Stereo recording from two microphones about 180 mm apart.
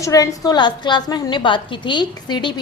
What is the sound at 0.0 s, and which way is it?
A woman's voice, 20° left (ahead or behind).